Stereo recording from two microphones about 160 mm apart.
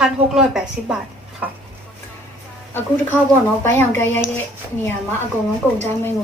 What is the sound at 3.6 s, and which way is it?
Speech, 15° left (ahead or behind).